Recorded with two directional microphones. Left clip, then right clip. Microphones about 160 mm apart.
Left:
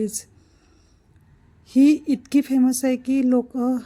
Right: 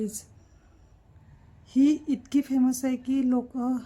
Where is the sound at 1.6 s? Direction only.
20° left (ahead or behind).